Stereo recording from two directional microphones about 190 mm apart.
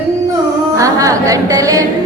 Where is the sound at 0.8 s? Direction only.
15° right (ahead or behind).